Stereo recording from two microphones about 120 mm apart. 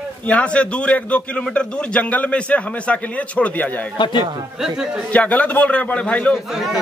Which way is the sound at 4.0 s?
40° left (ahead or behind).